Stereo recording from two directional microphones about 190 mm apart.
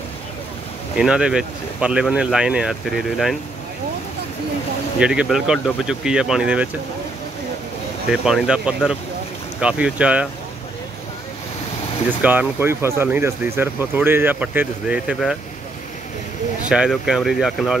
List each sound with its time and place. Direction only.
0.9 s speech: 5° right (ahead or behind)
5.0 s speech: 5° right (ahead or behind)
8.1 s speech: 5° right (ahead or behind)
12.1 s speech: 10° right (ahead or behind)
16.6 s speech: 5° right (ahead or behind)